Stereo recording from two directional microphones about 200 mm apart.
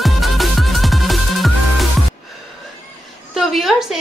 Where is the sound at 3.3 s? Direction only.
Centre (ahead or behind).